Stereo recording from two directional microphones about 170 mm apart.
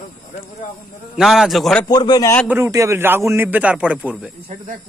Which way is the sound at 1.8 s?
25° left (ahead or behind).